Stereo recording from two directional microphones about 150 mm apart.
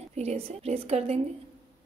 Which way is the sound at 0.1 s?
45° right (ahead or behind).